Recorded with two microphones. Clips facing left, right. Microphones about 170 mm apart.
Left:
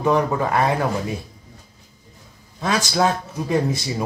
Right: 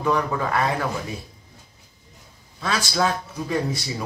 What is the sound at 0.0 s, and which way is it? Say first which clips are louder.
Speech: left 4 dB; 20° left (ahead or behind).